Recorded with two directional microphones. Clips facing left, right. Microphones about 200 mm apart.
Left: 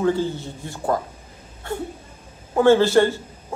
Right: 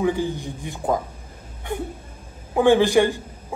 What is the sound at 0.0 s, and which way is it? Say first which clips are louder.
Speech: left 1 dB; 15° right (ahead or behind).